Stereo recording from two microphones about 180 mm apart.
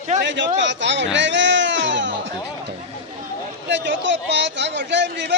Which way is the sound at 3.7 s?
80° right.